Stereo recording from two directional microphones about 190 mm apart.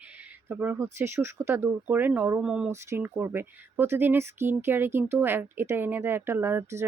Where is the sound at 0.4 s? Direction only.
10° right (ahead or behind).